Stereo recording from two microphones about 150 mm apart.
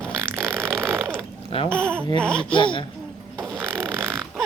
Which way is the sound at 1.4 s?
35° left (ahead or behind).